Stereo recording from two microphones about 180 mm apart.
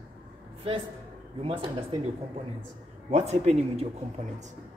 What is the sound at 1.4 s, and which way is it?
Speech, 30° right (ahead or behind).